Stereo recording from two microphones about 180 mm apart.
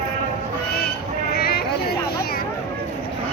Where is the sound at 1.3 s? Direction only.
55° left (ahead or behind).